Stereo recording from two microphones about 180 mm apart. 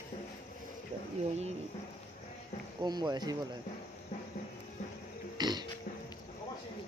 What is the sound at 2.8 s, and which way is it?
Speech, 25° right (ahead or behind).